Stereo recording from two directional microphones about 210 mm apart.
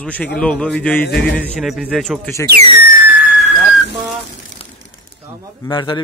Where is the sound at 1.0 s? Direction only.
50° left (ahead or behind).